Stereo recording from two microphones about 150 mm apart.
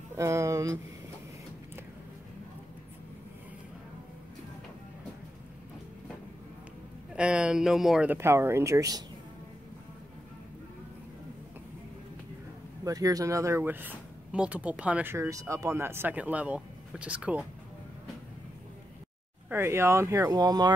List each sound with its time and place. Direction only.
0.1 s a sound: 20° right (ahead or behind)
7.2 s speech: 5° right (ahead or behind)
12.8 s speech: 25° right (ahead or behind)
19.5 s speech: 15° right (ahead or behind)